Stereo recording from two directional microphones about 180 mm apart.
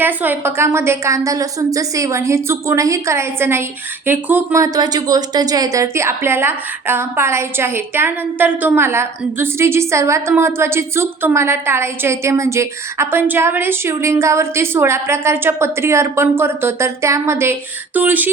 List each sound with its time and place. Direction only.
0.0 s speech: 10° right (ahead or behind)